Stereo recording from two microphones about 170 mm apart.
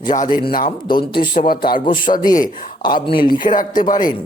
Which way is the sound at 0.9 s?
30° left (ahead or behind).